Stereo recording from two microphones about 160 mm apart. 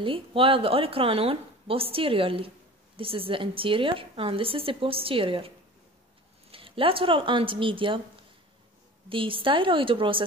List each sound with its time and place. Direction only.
0.0 s a woman's voice: 35° right (ahead or behind)
6.5 s a woman's voice: 35° right (ahead or behind)
9.1 s a woman's voice: 35° right (ahead or behind)